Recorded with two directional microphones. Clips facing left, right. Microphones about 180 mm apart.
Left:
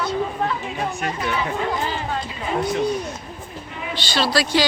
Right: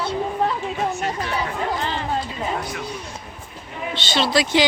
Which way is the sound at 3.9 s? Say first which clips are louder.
Right 1 dB; 20° right (ahead or behind).